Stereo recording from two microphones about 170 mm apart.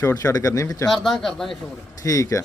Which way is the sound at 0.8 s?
Centre (ahead or behind).